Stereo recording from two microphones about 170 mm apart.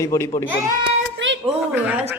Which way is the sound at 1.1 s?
90° right.